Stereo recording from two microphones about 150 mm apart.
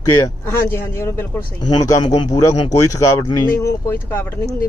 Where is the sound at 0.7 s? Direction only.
15° left (ahead or behind).